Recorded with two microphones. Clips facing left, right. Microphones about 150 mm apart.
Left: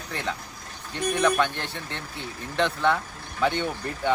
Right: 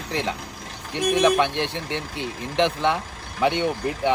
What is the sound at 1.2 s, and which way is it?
Speech, 20° right (ahead or behind).